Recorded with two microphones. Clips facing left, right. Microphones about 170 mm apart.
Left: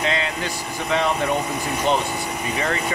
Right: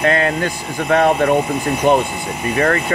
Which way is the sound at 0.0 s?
50° right (ahead or behind).